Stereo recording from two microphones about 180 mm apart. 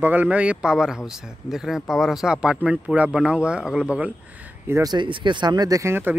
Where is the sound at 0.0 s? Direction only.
10° right (ahead or behind).